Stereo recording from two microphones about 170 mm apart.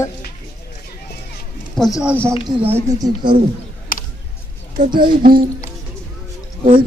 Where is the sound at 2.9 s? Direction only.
20° right (ahead or behind).